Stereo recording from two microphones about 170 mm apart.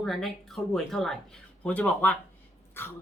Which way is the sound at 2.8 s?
15° left (ahead or behind).